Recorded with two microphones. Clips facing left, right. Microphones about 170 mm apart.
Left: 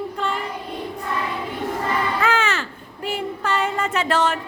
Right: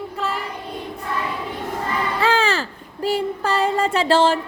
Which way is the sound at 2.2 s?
35° right (ahead or behind).